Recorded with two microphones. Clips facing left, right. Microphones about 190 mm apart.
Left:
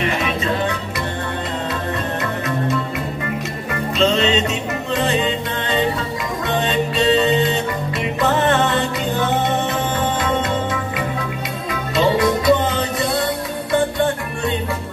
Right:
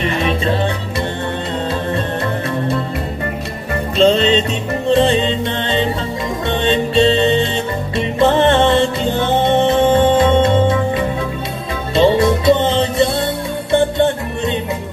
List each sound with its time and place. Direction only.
4.0 s music: 35° right (ahead or behind)
6.6 s music: 30° right (ahead or behind)